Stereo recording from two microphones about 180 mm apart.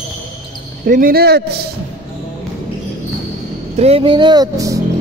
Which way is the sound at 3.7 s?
35° right (ahead or behind).